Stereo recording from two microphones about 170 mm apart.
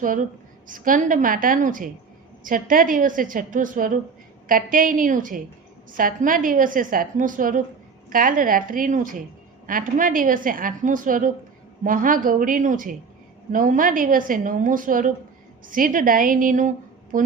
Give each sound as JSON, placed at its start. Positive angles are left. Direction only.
{"t": 0.0, "sound": "a woman's voice", "side_deg": -50}